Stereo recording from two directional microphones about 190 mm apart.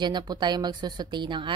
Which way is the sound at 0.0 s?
25° right (ahead or behind).